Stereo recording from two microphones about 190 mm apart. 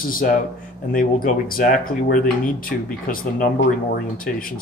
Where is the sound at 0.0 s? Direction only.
45° left (ahead or behind).